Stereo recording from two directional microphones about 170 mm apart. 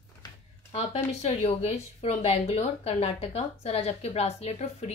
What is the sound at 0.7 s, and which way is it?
Speech, 40° left (ahead or behind).